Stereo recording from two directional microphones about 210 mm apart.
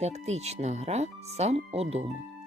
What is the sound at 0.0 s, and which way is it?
Speech, 30° right (ahead or behind).